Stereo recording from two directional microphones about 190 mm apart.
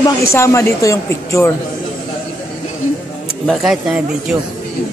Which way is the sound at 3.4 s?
Centre (ahead or behind).